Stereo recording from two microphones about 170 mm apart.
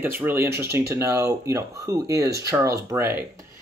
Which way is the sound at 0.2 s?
10° right (ahead or behind).